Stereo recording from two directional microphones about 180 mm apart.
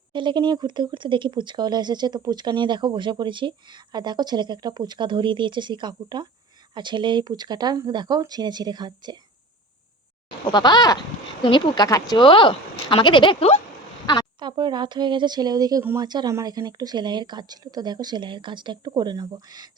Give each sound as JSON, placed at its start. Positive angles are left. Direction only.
{"t": 0.1, "sound": "speech", "side_deg": -25}
{"t": 10.4, "sound": "speech", "side_deg": 25}
{"t": 14.3, "sound": "speech", "side_deg": -25}